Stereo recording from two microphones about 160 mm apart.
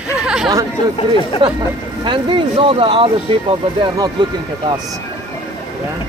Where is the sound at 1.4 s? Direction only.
35° right (ahead or behind).